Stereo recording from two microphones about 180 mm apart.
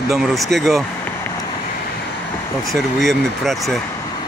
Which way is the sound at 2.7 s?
Centre (ahead or behind).